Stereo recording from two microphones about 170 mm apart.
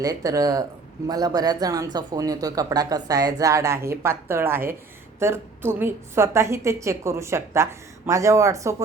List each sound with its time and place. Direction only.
0.0 s a woman's voice: 20° right (ahead or behind)